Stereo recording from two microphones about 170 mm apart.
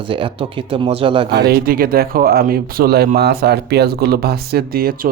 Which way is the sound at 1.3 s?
75° right (ahead or behind).